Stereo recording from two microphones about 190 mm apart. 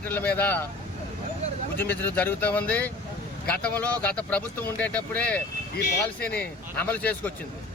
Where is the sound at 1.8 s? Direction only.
10° left (ahead or behind).